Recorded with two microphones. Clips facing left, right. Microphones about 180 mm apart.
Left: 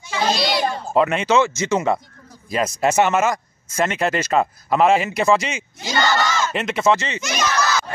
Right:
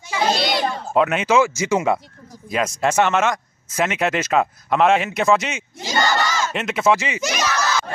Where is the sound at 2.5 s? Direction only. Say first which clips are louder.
Left 1 dB; 5° left (ahead or behind).